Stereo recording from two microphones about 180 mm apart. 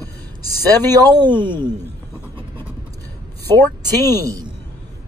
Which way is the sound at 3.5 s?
10° left (ahead or behind).